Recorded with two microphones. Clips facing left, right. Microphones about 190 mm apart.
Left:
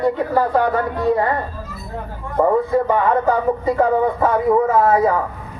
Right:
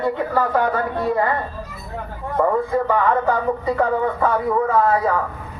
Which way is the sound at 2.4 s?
20° left (ahead or behind).